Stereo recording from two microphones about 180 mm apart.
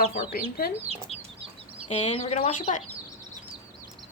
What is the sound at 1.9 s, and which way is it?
Speech, 35° left (ahead or behind).